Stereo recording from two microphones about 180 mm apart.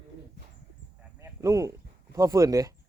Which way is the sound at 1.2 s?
15° right (ahead or behind).